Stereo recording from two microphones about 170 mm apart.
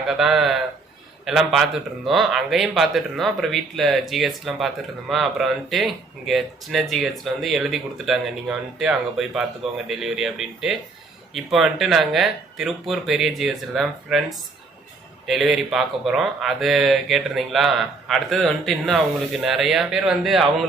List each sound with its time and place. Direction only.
0.1 s speech: centre (ahead or behind)